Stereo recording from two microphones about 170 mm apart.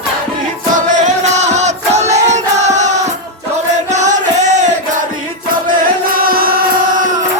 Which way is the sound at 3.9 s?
45° right (ahead or behind).